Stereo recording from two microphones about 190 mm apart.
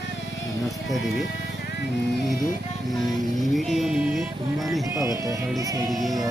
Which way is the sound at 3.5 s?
Centre (ahead or behind).